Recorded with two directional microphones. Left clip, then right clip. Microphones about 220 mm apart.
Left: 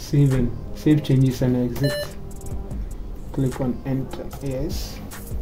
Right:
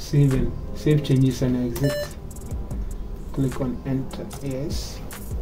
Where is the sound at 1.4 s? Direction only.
40° left (ahead or behind).